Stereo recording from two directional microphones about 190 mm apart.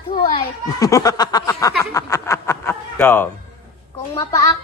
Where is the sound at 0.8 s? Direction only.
20° left (ahead or behind).